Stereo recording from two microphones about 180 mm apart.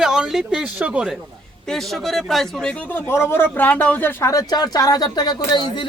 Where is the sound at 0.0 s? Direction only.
5° right (ahead or behind).